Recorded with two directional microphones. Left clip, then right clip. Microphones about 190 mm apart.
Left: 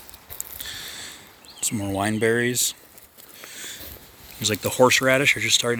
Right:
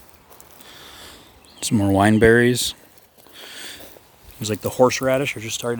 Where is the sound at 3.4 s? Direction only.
40° right (ahead or behind).